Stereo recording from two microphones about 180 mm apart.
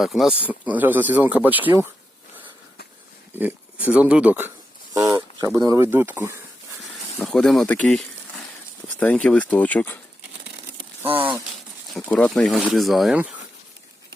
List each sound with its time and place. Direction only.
0.0 s speech: centre (ahead or behind)
3.3 s speech: 10° right (ahead or behind)
7.2 s speech: centre (ahead or behind)
11.9 s speech: 5° left (ahead or behind)